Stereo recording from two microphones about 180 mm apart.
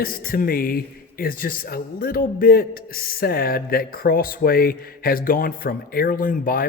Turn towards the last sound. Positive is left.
turn(degrees=50)  # may be behind; listen again after turning